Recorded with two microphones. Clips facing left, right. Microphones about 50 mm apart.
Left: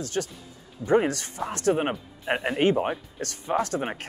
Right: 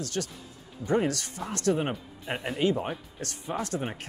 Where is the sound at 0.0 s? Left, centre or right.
Left.